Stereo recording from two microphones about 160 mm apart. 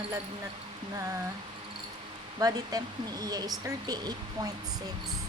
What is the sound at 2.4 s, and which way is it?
Speech, 25° right (ahead or behind).